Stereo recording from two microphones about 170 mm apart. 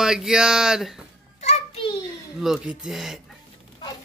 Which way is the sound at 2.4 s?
Centre (ahead or behind).